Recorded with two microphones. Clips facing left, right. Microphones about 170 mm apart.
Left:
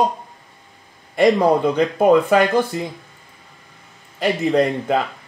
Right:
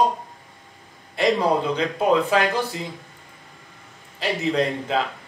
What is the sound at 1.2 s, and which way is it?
Speech, 50° left (ahead or behind).